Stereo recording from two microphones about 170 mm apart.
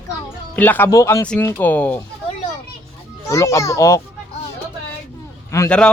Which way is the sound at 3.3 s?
20° left (ahead or behind).